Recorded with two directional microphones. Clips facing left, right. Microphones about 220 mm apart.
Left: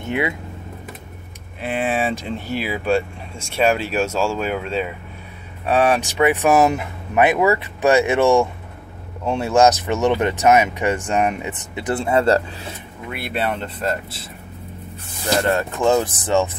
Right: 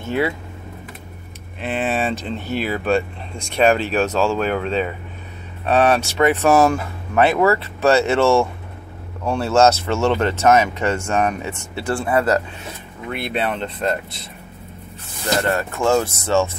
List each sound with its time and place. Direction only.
1.6 s speech: 10° left (ahead or behind); by 12.4 s 25° left (ahead or behind)
13.1 s speech: 5° left (ahead or behind)
15.2 s speech: 15° left (ahead or behind)